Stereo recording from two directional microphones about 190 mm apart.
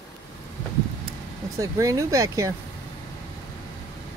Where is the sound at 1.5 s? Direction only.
15° right (ahead or behind).